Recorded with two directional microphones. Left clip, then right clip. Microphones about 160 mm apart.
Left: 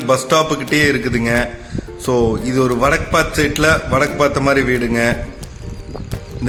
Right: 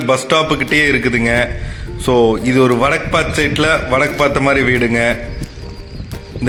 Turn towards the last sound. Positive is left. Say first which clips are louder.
# right 3 dB
turn(degrees=-15)  # may be behind; listen again after turning